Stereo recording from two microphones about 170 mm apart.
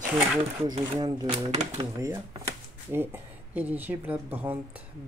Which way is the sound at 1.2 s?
40° right (ahead or behind).